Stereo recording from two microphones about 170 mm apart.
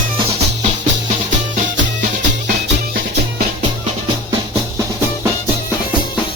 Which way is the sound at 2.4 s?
60° right (ahead or behind).